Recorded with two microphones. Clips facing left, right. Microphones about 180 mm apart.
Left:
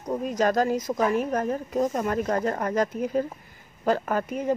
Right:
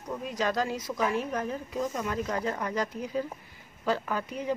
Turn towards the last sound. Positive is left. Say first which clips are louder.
# left 6 dB
turn(degrees=50)  # may be behind; listen again after turning